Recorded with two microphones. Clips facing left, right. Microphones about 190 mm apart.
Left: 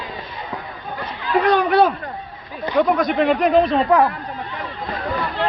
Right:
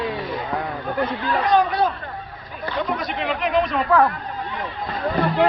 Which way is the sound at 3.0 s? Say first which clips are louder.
Left 8 dB; 50° left (ahead or behind).